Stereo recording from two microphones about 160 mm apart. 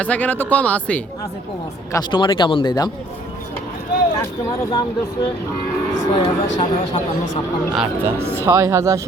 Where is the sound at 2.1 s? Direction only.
30° left (ahead or behind).